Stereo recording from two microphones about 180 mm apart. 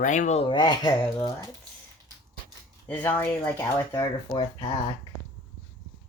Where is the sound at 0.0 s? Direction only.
45° left (ahead or behind); by 1.3 s 20° left (ahead or behind).